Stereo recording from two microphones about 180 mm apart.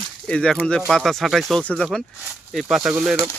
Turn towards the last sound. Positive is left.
turn(degrees=-5)  # may be behind; listen again after turning